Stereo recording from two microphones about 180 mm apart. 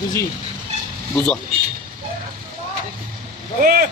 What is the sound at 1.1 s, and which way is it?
Speech, 5° left (ahead or behind).